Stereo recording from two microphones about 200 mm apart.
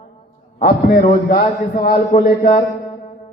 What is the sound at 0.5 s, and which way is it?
A man's voice, 45° left (ahead or behind).